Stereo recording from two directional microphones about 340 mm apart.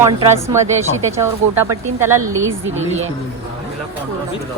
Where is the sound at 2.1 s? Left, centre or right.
Right.